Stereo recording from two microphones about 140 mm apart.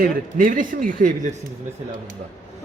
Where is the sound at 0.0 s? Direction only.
75° right (ahead or behind).